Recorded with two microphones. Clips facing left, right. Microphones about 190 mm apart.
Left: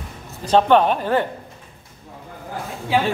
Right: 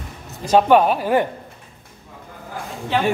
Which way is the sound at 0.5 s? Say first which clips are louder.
Right 1 dB; 10° right (ahead or behind).